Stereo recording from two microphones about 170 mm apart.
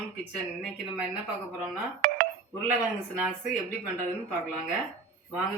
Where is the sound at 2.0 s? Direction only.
50° right (ahead or behind).